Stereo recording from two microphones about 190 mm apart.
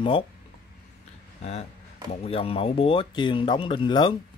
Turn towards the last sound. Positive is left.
turn(degrees=25)  # may be behind; listen again after turning